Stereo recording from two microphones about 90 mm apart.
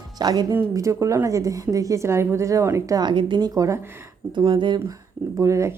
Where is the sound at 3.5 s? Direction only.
35° right (ahead or behind).